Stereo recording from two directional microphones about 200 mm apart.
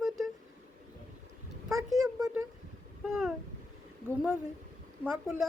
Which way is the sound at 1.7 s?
15° right (ahead or behind).